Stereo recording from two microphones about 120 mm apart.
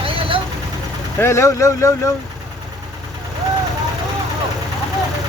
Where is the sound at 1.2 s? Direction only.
20° left (ahead or behind).